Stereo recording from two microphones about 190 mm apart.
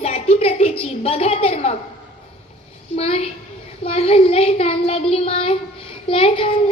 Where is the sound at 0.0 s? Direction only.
35° left (ahead or behind).